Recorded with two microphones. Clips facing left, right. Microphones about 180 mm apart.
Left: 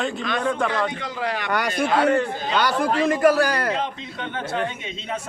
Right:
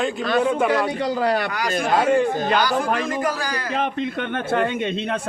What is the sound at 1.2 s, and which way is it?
Speech, 40° right (ahead or behind).